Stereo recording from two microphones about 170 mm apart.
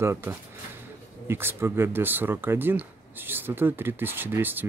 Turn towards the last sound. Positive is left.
turn(degrees=-10)  # may be behind; listen again after turning